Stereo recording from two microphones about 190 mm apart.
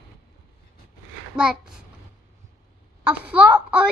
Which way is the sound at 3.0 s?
10° right (ahead or behind).